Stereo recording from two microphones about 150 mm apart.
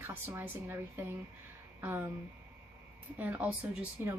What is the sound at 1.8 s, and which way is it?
Speech, 15° right (ahead or behind).